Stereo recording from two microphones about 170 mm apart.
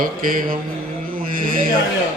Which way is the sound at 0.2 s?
55° right (ahead or behind).